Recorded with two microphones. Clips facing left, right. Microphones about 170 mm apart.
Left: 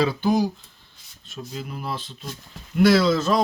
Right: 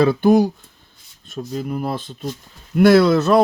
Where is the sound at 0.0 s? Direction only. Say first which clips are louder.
Right 7 dB; 55° right (ahead or behind).